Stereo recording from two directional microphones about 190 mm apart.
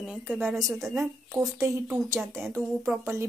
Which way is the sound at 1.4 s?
15° right (ahead or behind).